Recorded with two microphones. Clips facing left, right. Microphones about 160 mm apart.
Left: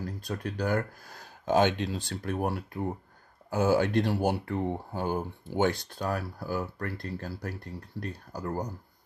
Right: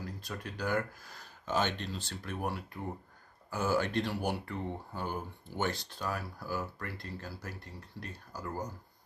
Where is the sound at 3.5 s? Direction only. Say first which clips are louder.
Left 6 dB; 55° left (ahead or behind).